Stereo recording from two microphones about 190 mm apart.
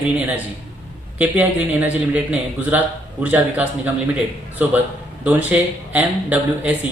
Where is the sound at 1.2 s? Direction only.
10° right (ahead or behind).